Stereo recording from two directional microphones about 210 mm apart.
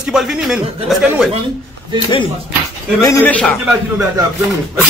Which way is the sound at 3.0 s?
15° left (ahead or behind).